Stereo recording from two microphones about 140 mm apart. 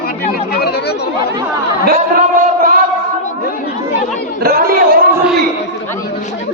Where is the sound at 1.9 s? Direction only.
85° right.